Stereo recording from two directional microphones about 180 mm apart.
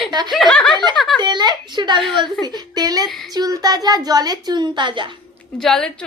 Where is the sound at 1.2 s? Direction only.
25° right (ahead or behind).